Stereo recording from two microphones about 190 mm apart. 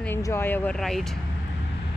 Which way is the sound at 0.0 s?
10° left (ahead or behind).